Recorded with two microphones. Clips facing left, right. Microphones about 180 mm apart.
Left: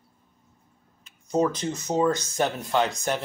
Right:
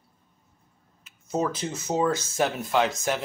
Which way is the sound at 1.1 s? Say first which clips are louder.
Left 4 dB; 5° right (ahead or behind).